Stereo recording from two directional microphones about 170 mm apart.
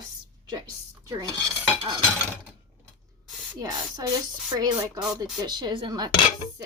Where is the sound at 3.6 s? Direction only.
25° right (ahead or behind).